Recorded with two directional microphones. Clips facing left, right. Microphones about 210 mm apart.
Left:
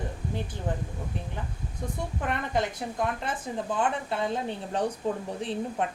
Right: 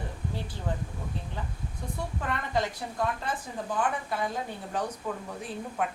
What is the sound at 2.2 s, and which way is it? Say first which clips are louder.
Speech: left 2 dB; 20° left (ahead or behind).